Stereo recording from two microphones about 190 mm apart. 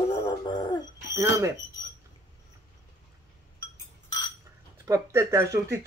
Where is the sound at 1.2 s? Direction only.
15° right (ahead or behind).